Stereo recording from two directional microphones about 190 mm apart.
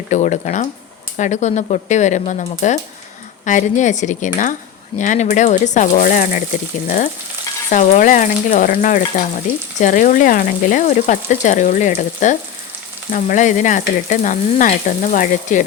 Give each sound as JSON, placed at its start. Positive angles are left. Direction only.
{"t": 0.1, "sound": "frying", "side_deg": 40}
{"t": 6.8, "sound": "speech", "side_deg": 45}
{"t": 13.1, "sound": "frying", "side_deg": 45}